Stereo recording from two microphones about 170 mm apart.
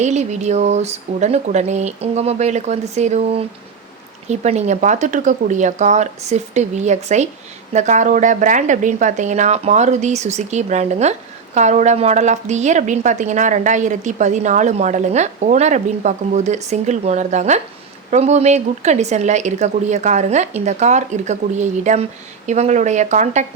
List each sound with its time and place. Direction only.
0.0 s a woman's voice: 40° right (ahead or behind)